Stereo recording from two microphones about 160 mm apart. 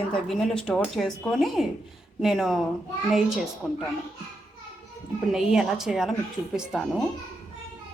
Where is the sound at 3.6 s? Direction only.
Centre (ahead or behind).